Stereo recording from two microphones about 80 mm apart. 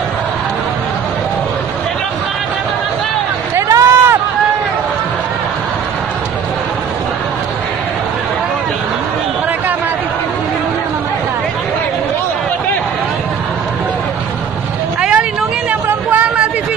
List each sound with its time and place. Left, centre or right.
3.7 s run: right
15.0 s vehicle: centre
15.9 s a sound: centre